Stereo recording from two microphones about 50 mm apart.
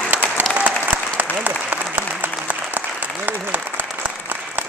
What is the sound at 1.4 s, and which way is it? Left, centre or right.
Applause, right.